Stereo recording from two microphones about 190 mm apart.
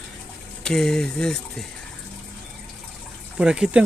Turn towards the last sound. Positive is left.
turn(degrees=-5)  # may be behind; listen again after turning